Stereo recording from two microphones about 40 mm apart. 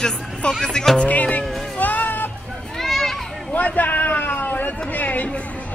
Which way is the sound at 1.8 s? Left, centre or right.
Left.